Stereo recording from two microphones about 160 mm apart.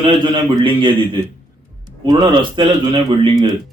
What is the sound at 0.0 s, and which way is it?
Speech, 30° right (ahead or behind).